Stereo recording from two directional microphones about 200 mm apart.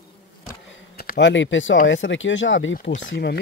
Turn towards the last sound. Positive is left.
turn(degrees=60)  # may be behind; listen again after turning